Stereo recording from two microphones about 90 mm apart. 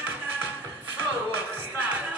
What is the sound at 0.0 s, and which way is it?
Music, 20° right (ahead or behind).